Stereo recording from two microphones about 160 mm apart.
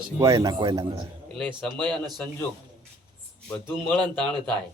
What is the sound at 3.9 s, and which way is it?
Speech, 5° left (ahead or behind).